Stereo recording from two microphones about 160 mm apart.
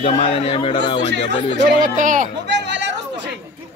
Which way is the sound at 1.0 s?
90° right.